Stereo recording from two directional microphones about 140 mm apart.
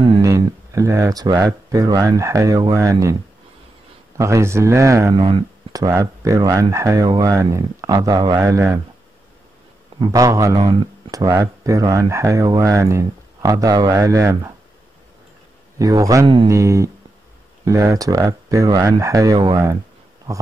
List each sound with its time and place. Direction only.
0.2 s speech: 25° right (ahead or behind)
4.2 s speech: 20° right (ahead or behind)
5.1 s speech: 40° right (ahead or behind)
5.7 s speech: 25° right (ahead or behind)
9.9 s speech: 25° right (ahead or behind)
15.8 s speech: 25° right (ahead or behind)